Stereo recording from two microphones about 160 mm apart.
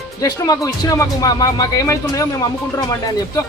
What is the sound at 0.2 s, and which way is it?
Speech, 20° left (ahead or behind).